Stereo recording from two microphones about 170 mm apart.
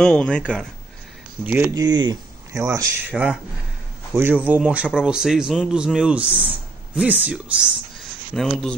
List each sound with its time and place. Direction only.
0.0 s a man's voice: 5° left (ahead or behind)
1.4 s speech: 15° right (ahead or behind)
3.1 s a man's voice: 5° right (ahead or behind)